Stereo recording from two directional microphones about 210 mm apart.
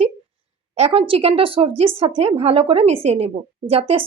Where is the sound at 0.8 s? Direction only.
30° right (ahead or behind).